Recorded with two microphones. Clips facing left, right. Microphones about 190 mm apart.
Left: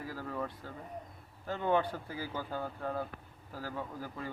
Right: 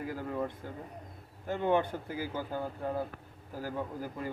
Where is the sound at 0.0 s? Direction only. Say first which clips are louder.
Right 4 dB; 20° right (ahead or behind).